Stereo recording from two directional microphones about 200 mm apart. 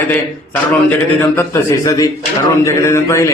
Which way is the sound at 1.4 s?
15° left (ahead or behind).